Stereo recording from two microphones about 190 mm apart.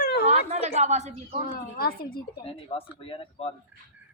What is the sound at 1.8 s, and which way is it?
Speech, 50° left (ahead or behind).